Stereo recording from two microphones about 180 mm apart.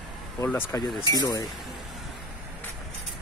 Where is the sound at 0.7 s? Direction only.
15° left (ahead or behind).